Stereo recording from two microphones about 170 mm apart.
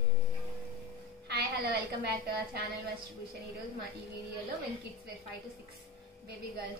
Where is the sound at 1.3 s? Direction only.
70° right (ahead or behind).